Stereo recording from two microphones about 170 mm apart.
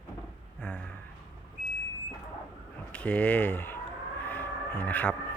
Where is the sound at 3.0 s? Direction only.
5° left (ahead or behind).